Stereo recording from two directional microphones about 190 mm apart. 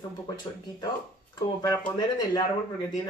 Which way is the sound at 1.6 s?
20° left (ahead or behind).